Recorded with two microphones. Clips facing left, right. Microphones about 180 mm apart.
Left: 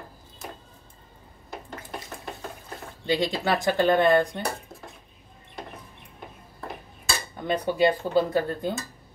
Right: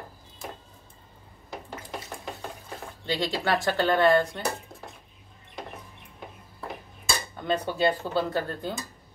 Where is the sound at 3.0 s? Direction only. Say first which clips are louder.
Left 3 dB; 15° left (ahead or behind).